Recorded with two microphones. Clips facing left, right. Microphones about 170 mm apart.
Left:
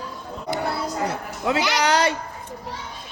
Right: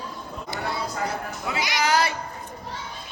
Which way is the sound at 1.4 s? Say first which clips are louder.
Left 5 dB; 75° left (ahead or behind).